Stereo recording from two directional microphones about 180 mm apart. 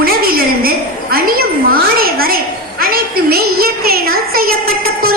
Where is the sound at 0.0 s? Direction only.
55° right (ahead or behind).